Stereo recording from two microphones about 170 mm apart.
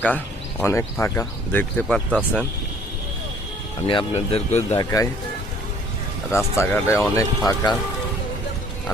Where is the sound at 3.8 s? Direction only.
30° left (ahead or behind).